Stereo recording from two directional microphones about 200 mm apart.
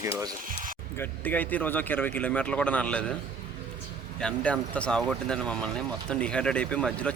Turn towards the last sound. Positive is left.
turn(degrees=5)  # may be behind; listen again after turning